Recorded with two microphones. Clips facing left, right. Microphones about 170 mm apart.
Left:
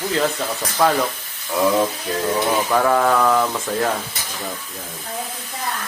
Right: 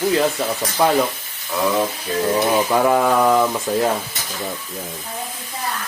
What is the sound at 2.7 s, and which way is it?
Speech, 15° right (ahead or behind).